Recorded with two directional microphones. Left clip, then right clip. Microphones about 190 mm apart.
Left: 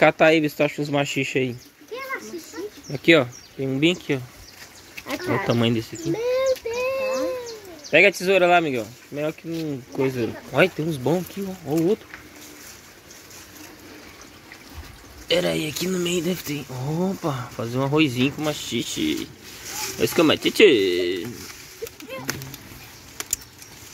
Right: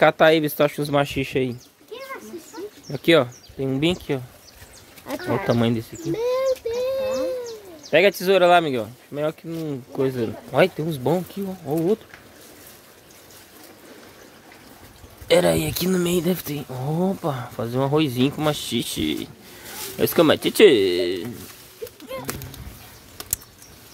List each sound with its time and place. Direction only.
0.0 s speech: 10° right (ahead or behind)
2.9 s speech: 10° right (ahead or behind)
5.2 s speech: 40° right (ahead or behind)
5.5 s speech: 5° right (ahead or behind)
6.1 s child singing: 60° right (ahead or behind)
7.9 s speech: 15° right (ahead or behind)
15.2 s speech: 25° right (ahead or behind)
18.4 s speech: 25° right (ahead or behind)